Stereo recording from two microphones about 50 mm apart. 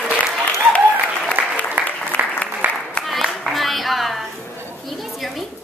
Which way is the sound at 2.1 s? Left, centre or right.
Left.